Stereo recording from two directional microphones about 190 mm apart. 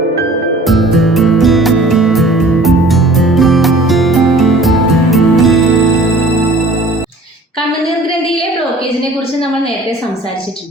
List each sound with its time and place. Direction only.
0.7 s music: centre (ahead or behind)